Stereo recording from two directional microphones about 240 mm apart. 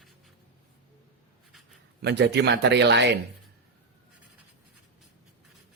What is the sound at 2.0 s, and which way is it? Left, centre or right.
Speech, right.